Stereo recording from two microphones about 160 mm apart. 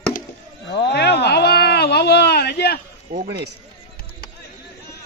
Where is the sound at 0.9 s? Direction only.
90° left.